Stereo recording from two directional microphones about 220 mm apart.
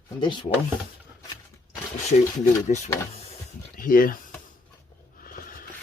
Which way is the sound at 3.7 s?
40° left (ahead or behind).